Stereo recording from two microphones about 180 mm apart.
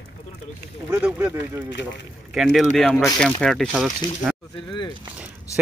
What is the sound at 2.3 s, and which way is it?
Speech, centre (ahead or behind).